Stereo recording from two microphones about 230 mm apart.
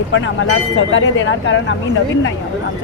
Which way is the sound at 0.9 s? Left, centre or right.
Left.